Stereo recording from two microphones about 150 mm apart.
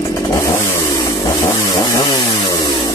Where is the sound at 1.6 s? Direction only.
20° left (ahead or behind).